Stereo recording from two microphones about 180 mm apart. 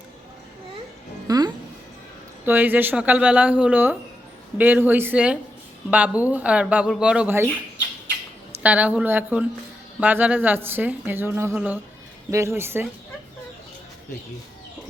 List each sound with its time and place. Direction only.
1.3 s music: 20° right (ahead or behind)
2.4 s speech: 10° right (ahead or behind)
8.6 s speech: 10° right (ahead or behind)